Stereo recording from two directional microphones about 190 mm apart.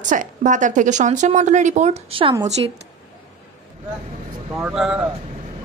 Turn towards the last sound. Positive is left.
turn(degrees=-5)  # may be behind; listen again after turning